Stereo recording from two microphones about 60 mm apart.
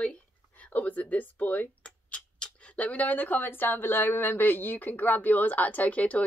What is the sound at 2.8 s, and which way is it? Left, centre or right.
Speech, left.